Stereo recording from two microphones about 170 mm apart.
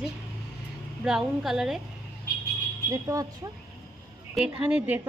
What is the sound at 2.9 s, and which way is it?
Speech, 20° right (ahead or behind).